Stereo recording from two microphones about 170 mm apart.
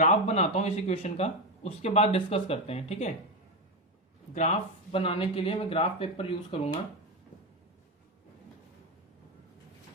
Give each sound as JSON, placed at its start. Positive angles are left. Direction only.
{"t": 0.0, "sound": "speech", "side_deg": 40}
{"t": 4.4, "sound": "speech", "side_deg": 35}